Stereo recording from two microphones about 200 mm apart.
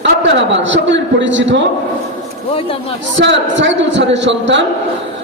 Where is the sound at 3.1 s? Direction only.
65° right (ahead or behind).